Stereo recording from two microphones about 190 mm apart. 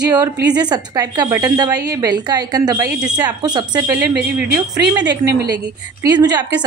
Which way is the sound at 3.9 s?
60° right (ahead or behind).